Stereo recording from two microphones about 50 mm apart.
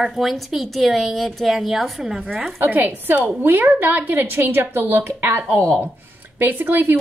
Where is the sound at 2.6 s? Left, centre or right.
Right.